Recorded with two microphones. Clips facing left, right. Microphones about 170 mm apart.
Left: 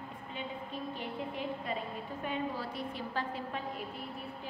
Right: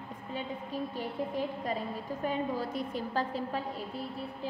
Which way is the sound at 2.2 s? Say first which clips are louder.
Right 4 dB; 40° right (ahead or behind).